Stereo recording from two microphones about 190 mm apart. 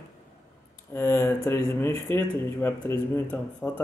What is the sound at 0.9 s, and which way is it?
Speech, 15° left (ahead or behind).